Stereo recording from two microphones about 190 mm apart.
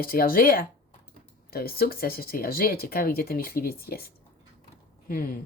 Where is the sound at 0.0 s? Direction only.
50° left (ahead or behind).